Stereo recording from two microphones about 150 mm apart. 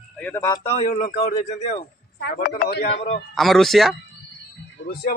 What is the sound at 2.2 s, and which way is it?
Speech, 90° left.